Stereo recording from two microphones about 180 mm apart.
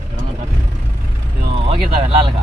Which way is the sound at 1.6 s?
30° right (ahead or behind).